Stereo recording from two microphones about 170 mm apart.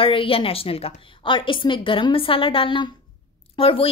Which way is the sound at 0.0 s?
30° left (ahead or behind).